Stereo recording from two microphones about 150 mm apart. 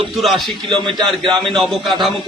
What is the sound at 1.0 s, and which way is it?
Speech, 5° left (ahead or behind).